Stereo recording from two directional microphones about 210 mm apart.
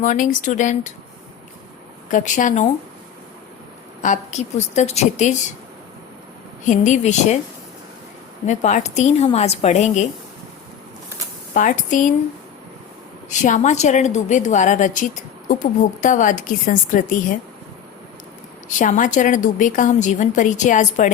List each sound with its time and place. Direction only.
0.0 s a woman's voice: 35° left (ahead or behind)
2.0 s a woman's voice: 35° left (ahead or behind)
4.0 s a woman's voice: 35° left (ahead or behind)
6.7 s a woman's voice: 35° left (ahead or behind)
8.4 s a woman's voice: 35° left (ahead or behind)
11.5 s a woman's voice: 40° left (ahead or behind)
13.4 s a woman's voice: 35° left (ahead or behind)
18.8 s a woman's voice: 40° left (ahead or behind)